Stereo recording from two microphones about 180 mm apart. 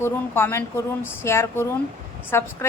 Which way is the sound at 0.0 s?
15° left (ahead or behind).